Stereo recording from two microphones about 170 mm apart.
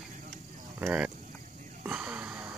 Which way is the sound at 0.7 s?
10° right (ahead or behind).